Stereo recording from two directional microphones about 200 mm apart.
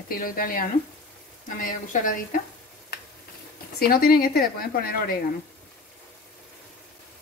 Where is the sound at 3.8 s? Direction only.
50° left (ahead or behind).